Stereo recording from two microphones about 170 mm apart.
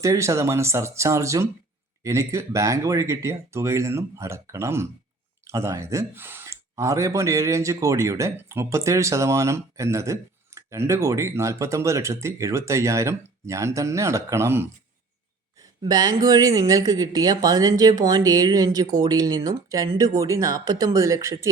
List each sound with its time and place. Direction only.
0.0 s speech: 15° right (ahead or behind)
15.8 s speech: 20° right (ahead or behind)